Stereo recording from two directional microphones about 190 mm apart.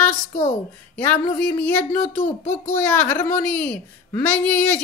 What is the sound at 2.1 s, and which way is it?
Speech, 45° left (ahead or behind).